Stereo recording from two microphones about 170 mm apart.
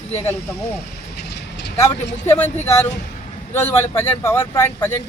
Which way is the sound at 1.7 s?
15° left (ahead or behind).